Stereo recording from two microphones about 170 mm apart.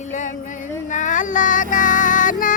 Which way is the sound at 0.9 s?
50° left (ahead or behind).